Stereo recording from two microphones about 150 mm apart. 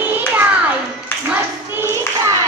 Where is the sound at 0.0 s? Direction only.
10° right (ahead or behind).